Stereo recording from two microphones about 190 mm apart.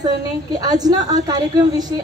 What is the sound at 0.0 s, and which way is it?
A woman's voice, 20° right (ahead or behind).